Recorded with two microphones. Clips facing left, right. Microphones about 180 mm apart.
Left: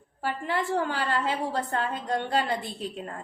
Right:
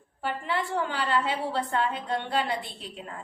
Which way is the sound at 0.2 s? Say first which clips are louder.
Left 1 dB; 45° left (ahead or behind).